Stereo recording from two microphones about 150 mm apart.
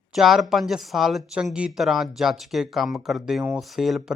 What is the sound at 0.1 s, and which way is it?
Speech, centre (ahead or behind).